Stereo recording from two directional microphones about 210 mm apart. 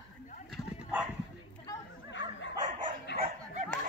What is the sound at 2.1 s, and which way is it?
Dog, 60° left (ahead or behind).